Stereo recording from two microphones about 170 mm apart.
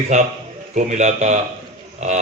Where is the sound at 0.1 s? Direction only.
45° right (ahead or behind).